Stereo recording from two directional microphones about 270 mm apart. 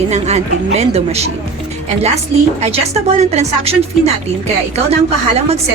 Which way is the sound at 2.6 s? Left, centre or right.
Right.